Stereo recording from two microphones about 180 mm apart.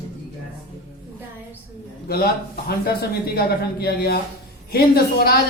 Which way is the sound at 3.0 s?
60° left (ahead or behind).